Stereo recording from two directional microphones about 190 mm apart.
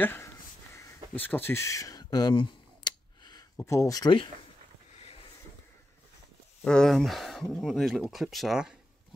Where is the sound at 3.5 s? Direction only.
15° left (ahead or behind).